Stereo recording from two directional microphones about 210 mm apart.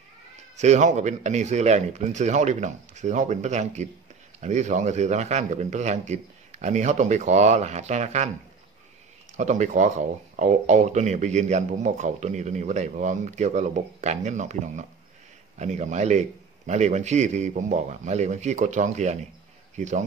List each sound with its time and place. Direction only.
0.6 s speech: 35° right (ahead or behind)
9.4 s speech: 35° right (ahead or behind)